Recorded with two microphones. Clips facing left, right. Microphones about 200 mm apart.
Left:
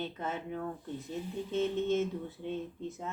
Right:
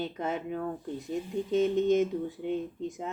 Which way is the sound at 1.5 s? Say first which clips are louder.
Right 6 dB; 15° right (ahead or behind).